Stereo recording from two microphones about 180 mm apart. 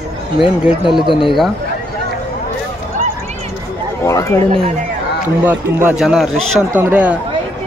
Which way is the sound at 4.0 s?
15° left (ahead or behind).